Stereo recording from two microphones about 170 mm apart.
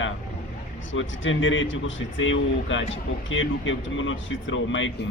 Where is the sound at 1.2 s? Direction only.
90° left.